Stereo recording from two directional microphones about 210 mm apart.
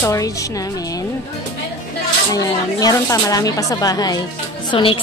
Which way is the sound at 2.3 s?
15° left (ahead or behind).